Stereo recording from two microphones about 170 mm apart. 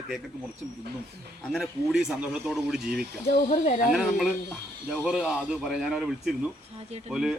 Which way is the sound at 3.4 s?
45° left (ahead or behind).